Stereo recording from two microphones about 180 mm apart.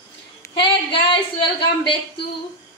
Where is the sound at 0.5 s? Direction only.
30° left (ahead or behind).